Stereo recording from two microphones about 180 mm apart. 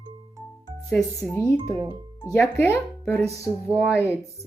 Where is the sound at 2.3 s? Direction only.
10° left (ahead or behind).